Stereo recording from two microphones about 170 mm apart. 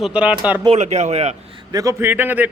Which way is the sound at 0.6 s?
40° right (ahead or behind).